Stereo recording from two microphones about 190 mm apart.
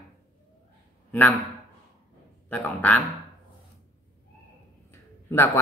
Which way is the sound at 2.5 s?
10° left (ahead or behind).